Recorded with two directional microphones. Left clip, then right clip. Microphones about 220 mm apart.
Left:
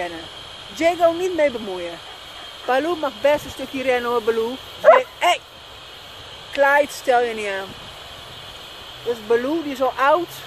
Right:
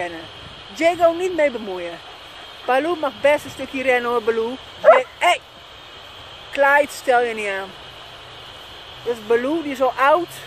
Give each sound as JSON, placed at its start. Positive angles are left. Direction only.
{"t": 0.7, "sound": "speech", "side_deg": -5}
{"t": 4.8, "sound": "bow-wow", "side_deg": -5}
{"t": 6.5, "sound": "speech", "side_deg": -5}
{"t": 9.3, "sound": "speech", "side_deg": -15}